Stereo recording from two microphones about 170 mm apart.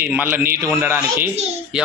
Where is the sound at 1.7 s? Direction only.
5° right (ahead or behind).